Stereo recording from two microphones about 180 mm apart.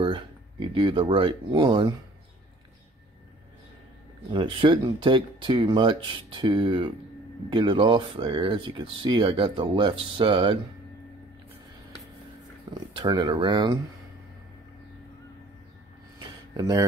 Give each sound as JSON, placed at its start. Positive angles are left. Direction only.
{"t": 0.0, "sound": "speech", "side_deg": -30}
{"t": 4.3, "sound": "speech", "side_deg": -25}
{"t": 12.7, "sound": "speech", "side_deg": -25}
{"t": 16.2, "sound": "a sound", "side_deg": -20}